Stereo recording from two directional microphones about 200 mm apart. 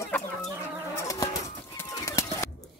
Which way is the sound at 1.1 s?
15° left (ahead or behind).